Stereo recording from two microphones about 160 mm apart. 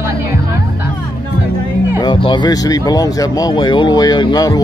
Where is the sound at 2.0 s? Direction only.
30° left (ahead or behind).